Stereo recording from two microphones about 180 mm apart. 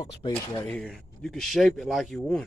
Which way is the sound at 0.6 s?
5° left (ahead or behind).